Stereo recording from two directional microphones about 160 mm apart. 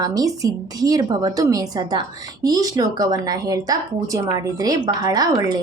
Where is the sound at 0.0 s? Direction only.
25° right (ahead or behind).